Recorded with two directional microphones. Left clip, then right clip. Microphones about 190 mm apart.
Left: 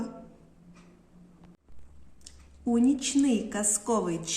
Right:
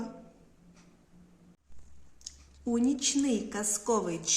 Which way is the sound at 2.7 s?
5° left (ahead or behind).